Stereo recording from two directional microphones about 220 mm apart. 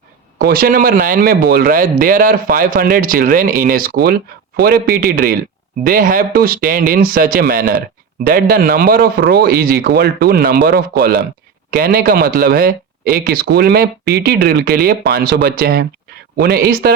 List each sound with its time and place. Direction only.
0.3 s speech: 45° right (ahead or behind)